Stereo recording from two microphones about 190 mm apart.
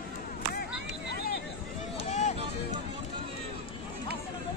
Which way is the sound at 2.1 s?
35° left (ahead or behind).